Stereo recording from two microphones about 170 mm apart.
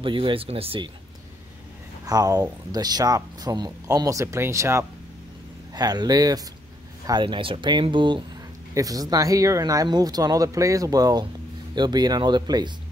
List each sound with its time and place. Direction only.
0.0 s speech: 30° right (ahead or behind)
2.0 s speech: 20° right (ahead or behind)